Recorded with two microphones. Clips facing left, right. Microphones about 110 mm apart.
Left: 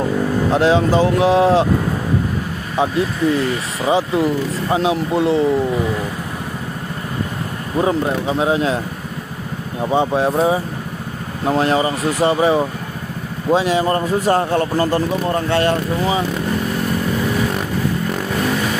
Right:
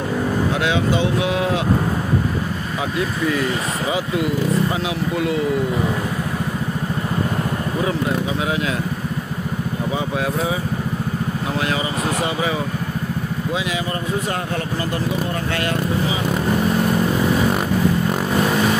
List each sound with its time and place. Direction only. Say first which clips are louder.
0.5 s speech: left 9 dB; 35° left (ahead or behind)
3.9 s speech: left 6 dB; 30° left (ahead or behind)
7.8 s speech: left 5 dB; 35° left (ahead or behind)
9.8 s speech: left 8 dB; 30° left (ahead or behind)